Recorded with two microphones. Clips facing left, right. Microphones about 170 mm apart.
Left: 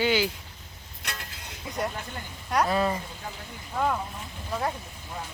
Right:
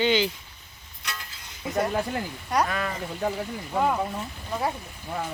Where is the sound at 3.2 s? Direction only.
90° right.